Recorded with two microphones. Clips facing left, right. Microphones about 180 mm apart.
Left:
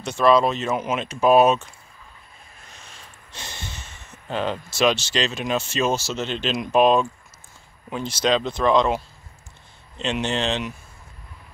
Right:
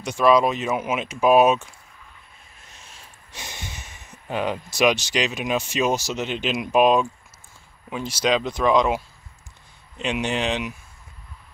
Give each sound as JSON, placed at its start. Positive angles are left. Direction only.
{"t": 0.0, "sound": "speech", "side_deg": -10}
{"t": 2.7, "sound": "speech", "side_deg": -5}